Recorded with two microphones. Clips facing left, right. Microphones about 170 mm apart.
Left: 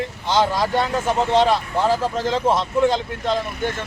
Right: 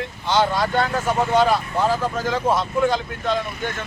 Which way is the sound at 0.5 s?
20° left (ahead or behind).